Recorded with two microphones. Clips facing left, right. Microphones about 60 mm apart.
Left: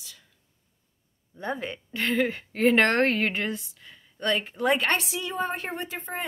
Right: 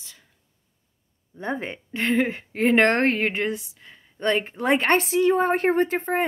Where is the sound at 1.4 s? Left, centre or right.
Right.